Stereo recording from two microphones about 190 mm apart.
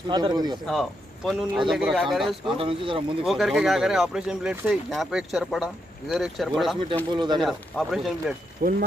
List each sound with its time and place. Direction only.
0.1 s speech: 20° right (ahead or behind)
0.7 s speech: centre (ahead or behind)
2.5 s speech: 30° right (ahead or behind)
3.3 s speech: centre (ahead or behind)
7.1 s speech: 25° right (ahead or behind)
7.4 s speech: centre (ahead or behind)
8.6 s speech: 45° right (ahead or behind)